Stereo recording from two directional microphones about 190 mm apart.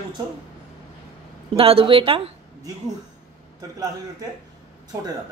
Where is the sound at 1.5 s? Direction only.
30° right (ahead or behind).